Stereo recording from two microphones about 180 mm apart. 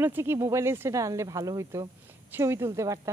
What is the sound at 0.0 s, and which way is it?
A woman's voice, 10° right (ahead or behind).